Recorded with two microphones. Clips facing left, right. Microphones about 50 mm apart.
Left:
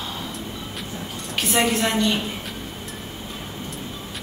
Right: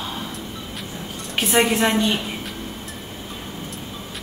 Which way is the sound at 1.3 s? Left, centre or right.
Centre.